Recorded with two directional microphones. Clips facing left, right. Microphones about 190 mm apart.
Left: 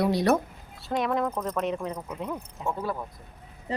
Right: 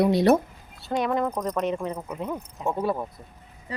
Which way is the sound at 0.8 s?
Centre (ahead or behind).